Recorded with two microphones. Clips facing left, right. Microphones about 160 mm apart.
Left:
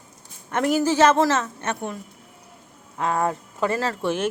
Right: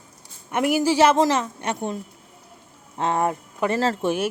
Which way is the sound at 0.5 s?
10° right (ahead or behind).